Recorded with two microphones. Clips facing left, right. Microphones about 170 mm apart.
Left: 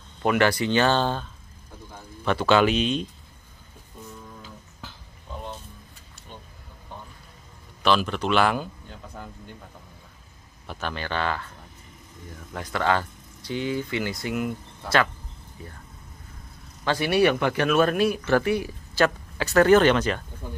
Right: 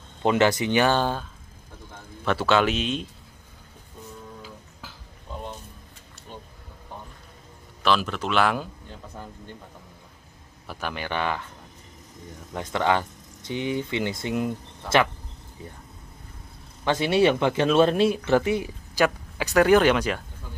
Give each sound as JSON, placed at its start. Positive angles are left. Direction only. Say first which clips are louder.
{"t": 0.2, "sound": "speech", "louder": "right 1 dB", "side_deg": -20}
{"t": 2.2, "sound": "speech", "louder": "left 2 dB", "side_deg": 0}
{"t": 7.8, "sound": "speech", "louder": "left 1 dB", "side_deg": 0}
{"t": 10.7, "sound": "speech", "louder": "even", "side_deg": -10}
{"t": 12.5, "sound": "speech", "louder": "right 1 dB", "side_deg": -20}
{"t": 15.6, "sound": "speech", "louder": "right 1 dB", "side_deg": -20}
{"t": 16.8, "sound": "speech", "louder": "right 1 dB", "side_deg": -20}